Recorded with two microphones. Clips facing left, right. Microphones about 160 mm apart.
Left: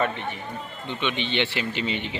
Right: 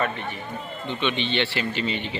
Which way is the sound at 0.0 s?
20° left (ahead or behind).